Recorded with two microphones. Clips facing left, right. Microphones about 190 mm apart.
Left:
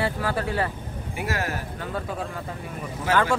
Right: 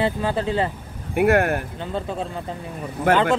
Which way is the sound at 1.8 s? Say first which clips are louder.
Right 3 dB; 25° right (ahead or behind).